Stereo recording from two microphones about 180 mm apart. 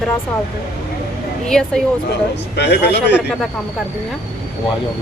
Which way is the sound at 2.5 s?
70° left (ahead or behind).